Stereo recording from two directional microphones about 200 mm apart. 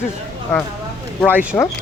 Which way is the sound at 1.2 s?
10° right (ahead or behind).